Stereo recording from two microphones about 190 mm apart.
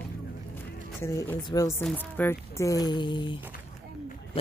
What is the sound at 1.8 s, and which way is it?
A man's voice, 5° left (ahead or behind).